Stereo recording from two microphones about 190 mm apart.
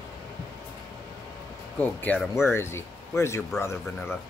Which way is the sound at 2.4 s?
15° left (ahead or behind).